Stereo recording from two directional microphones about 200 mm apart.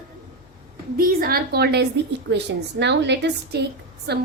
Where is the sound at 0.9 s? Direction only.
50° right (ahead or behind).